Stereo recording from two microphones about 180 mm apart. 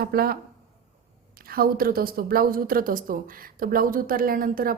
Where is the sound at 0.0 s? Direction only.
55° right (ahead or behind).